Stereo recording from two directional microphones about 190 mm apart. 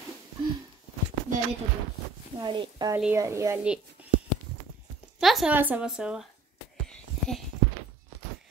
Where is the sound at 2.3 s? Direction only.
25° right (ahead or behind).